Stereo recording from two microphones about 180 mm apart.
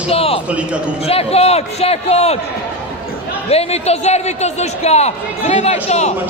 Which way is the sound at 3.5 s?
35° left (ahead or behind).